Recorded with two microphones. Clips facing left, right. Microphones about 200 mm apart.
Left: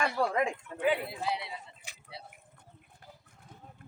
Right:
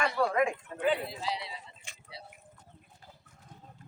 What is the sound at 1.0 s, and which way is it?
Speech, 55° left (ahead or behind).